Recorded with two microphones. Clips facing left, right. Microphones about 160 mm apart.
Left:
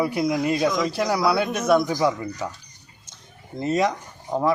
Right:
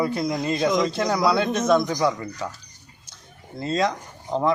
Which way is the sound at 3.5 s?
15° left (ahead or behind).